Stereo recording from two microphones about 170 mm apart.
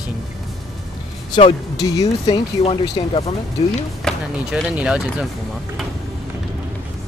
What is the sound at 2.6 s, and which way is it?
Speech, 35° left (ahead or behind).